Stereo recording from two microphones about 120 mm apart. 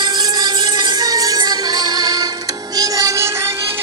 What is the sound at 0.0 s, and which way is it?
Music, 35° right (ahead or behind).